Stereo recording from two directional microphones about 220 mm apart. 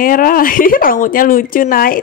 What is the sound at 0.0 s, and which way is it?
A woman's voice, 40° left (ahead or behind).